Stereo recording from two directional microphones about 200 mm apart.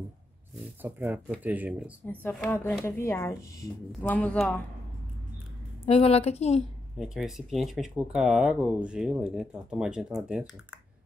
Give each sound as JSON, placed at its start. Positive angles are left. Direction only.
{"t": 0.8, "sound": "speech", "side_deg": -10}
{"t": 2.0, "sound": "speech", "side_deg": 10}
{"t": 5.9, "sound": "a woman's voice", "side_deg": 30}
{"t": 7.0, "sound": "speech", "side_deg": 0}